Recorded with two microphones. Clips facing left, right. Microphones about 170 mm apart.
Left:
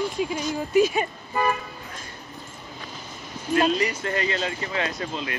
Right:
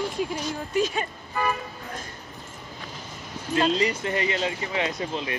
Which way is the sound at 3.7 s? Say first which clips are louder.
Even; 20° right (ahead or behind).